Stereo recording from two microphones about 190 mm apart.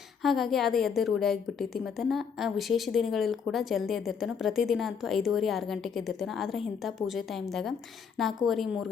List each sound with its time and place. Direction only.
0.2 s a woman's voice: centre (ahead or behind)